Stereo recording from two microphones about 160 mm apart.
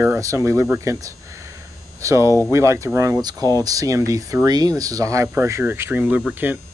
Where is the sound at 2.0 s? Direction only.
20° right (ahead or behind).